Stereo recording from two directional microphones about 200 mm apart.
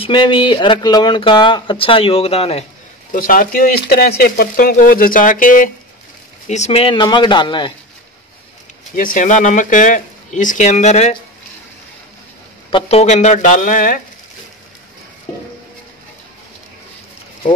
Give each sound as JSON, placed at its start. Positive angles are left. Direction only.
{"t": 0.0, "sound": "speech", "side_deg": 25}
{"t": 3.1, "sound": "speech", "side_deg": 45}
{"t": 8.9, "sound": "speech", "side_deg": 40}
{"t": 12.7, "sound": "speech", "side_deg": 30}